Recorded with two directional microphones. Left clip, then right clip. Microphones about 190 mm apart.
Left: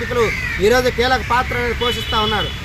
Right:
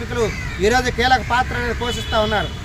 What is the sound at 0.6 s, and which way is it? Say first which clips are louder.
Speech: left 2 dB; 30° right (ahead or behind).